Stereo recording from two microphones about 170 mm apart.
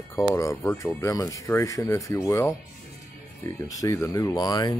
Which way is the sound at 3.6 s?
20° left (ahead or behind).